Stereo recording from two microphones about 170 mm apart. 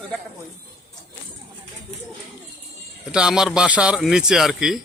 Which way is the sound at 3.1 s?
5° right (ahead or behind).